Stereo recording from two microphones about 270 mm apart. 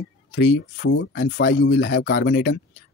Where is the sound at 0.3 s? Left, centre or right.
Left.